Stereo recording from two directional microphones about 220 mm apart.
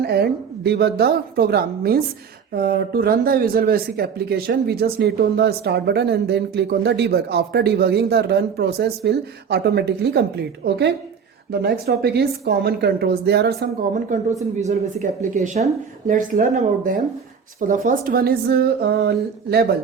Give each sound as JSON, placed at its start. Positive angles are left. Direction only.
{"t": 0.0, "sound": "speech", "side_deg": -45}
{"t": 11.6, "sound": "speech", "side_deg": -45}
{"t": 13.9, "sound": "speech", "side_deg": -35}